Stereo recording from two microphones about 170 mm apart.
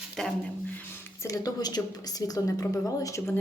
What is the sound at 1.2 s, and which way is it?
A woman's voice, 20° left (ahead or behind).